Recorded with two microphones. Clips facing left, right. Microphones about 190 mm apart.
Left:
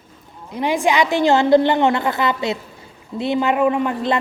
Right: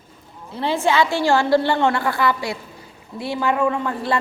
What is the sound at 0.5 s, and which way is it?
A woman's voice, 15° left (ahead or behind).